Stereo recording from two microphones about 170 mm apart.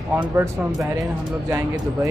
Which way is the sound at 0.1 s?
15° right (ahead or behind).